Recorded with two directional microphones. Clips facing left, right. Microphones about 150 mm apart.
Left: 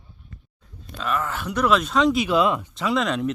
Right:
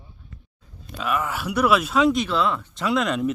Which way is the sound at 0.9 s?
10° right (ahead or behind).